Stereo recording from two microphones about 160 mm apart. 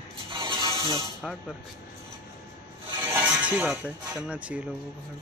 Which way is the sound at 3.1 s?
10° right (ahead or behind).